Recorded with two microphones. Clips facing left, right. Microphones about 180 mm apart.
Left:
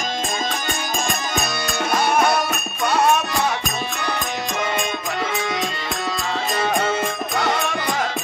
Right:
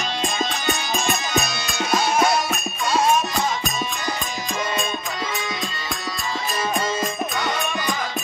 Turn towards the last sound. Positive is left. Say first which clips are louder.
# left 3 dB
turn(degrees=80)